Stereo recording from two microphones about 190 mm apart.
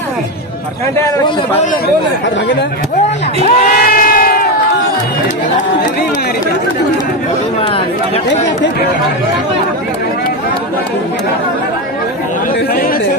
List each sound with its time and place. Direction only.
3.4 s crowd: 45° left (ahead or behind)